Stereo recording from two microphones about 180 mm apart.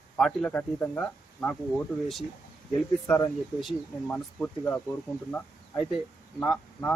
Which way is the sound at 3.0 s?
10° left (ahead or behind).